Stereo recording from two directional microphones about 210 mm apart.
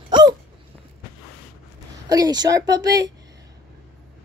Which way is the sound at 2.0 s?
15° right (ahead or behind).